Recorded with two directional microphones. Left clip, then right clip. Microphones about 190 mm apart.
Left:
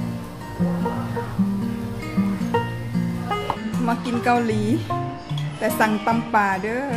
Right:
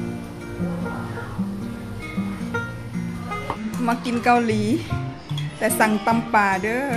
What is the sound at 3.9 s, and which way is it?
A woman's voice, 10° right (ahead or behind).